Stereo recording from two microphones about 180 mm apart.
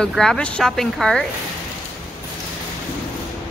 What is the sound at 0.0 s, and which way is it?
Speech, 5° left (ahead or behind).